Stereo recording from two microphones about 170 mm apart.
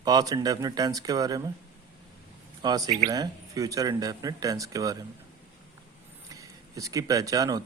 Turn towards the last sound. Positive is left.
turn(degrees=-20)  # may be behind; listen again after turning